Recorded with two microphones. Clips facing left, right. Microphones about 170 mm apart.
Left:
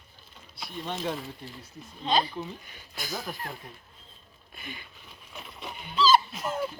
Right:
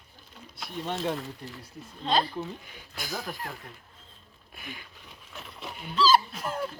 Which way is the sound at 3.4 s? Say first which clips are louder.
Even; 15° left (ahead or behind).